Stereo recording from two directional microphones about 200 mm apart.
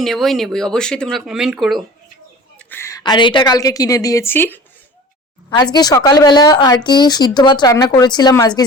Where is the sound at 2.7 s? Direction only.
15° left (ahead or behind).